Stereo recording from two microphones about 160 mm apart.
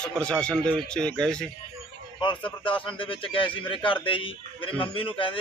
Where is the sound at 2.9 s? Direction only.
35° left (ahead or behind).